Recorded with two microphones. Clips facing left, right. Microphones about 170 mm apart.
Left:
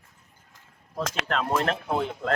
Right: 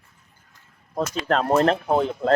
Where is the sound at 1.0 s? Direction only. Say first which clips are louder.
Right 4 dB; 90° left.